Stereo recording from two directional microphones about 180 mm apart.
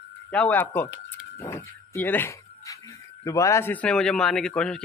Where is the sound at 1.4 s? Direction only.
15° left (ahead or behind).